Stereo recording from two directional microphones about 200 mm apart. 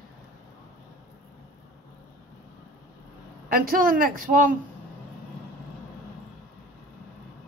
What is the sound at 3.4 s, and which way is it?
Speech, 45° right (ahead or behind).